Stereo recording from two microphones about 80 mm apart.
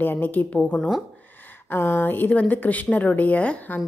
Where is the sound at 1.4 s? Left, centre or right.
Left.